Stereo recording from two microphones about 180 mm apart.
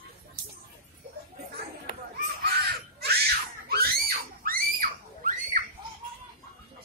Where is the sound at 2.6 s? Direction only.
65° right (ahead or behind).